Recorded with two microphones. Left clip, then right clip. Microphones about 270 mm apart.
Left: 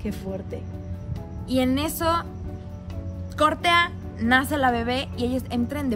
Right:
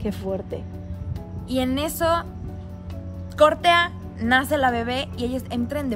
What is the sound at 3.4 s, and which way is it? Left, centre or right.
Speech, centre.